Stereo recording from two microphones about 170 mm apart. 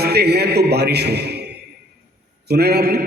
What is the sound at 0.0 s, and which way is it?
A man's voice, 70° right (ahead or behind).